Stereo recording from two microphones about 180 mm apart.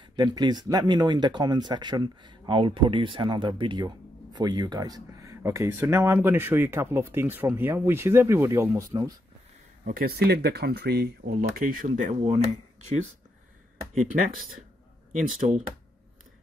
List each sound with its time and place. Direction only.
0.0 s speech: 25° right (ahead or behind)
9.8 s speech: 55° right (ahead or behind)
14.0 s speech: 50° right (ahead or behind)